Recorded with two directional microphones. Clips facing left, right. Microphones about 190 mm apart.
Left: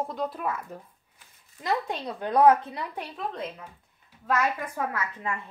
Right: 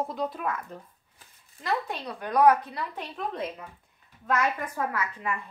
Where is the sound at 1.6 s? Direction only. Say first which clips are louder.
Left 2 dB; 20° left (ahead or behind).